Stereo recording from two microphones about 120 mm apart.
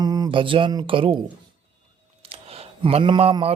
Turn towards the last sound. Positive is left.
turn(degrees=-45)  # may be behind; listen again after turning